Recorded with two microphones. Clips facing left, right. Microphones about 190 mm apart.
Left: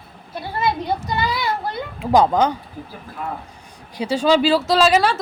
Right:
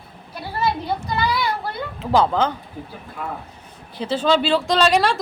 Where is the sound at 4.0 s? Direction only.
10° left (ahead or behind).